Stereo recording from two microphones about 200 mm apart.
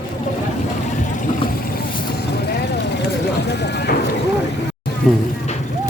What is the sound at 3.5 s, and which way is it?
Clip-clop, 55° left (ahead or behind).